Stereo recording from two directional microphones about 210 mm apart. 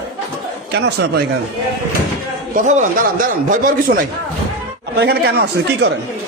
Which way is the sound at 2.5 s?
35° right (ahead or behind).